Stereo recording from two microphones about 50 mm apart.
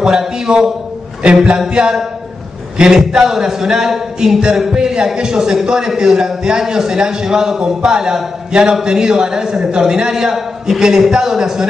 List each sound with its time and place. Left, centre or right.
0.0 s a man's voice: centre
8.5 s a sound: centre
8.8 s a man's voice: centre